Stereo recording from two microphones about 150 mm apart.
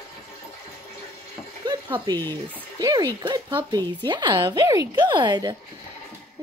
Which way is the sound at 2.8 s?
25° right (ahead or behind).